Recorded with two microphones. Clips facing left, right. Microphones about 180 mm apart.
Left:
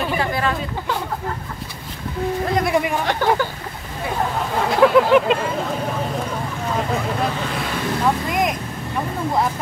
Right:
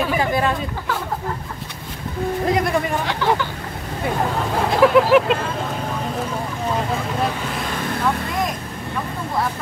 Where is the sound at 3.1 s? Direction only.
50° left (ahead or behind).